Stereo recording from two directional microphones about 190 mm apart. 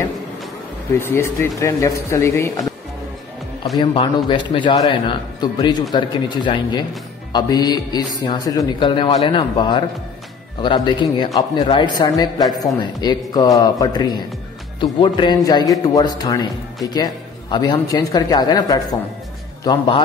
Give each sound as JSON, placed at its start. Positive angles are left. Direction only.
{"t": 0.9, "sound": "speech", "side_deg": 15}
{"t": 3.7, "sound": "a man's voice", "side_deg": 30}